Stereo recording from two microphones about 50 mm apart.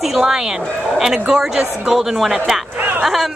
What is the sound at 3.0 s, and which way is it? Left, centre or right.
Speech, centre.